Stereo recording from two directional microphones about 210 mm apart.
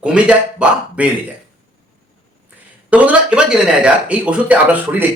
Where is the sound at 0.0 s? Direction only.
5° right (ahead or behind).